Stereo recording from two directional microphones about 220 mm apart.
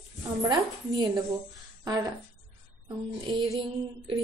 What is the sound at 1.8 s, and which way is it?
Speech, 15° right (ahead or behind).